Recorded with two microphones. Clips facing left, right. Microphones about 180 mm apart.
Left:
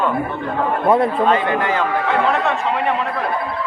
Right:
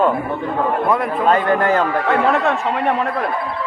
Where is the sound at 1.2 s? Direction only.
45° right (ahead or behind).